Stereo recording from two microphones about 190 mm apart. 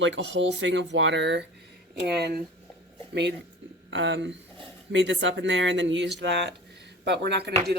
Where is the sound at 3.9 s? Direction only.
75° right (ahead or behind).